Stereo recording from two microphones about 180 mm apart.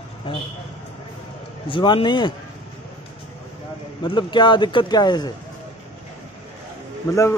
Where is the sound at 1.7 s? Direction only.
25° left (ahead or behind).